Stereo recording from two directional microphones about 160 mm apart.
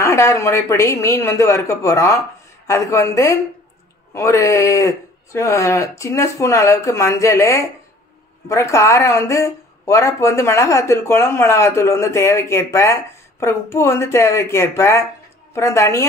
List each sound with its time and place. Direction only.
0.0 s speech: 20° left (ahead or behind)